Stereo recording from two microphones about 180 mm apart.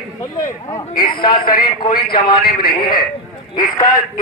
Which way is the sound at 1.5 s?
55° left (ahead or behind).